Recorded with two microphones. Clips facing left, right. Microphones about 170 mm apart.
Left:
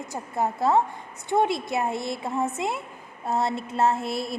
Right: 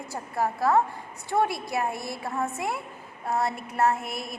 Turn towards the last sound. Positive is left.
turn(degrees=30)  # may be behind; listen again after turning